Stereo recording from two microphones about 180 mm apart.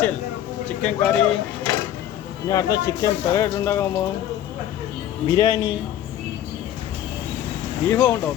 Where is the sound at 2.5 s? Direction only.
20° left (ahead or behind).